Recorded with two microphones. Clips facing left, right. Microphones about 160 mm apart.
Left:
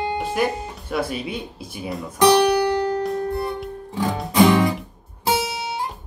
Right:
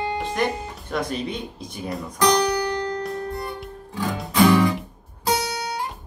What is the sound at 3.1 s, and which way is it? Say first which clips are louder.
Music: left 5 dB; 25° left (ahead or behind).